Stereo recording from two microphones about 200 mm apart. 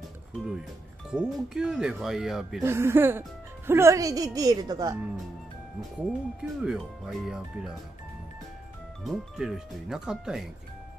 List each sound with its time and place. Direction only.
1.1 s speech: 5° right (ahead or behind)
5.9 s speech: 5° right (ahead or behind)
9.0 s speech: centre (ahead or behind)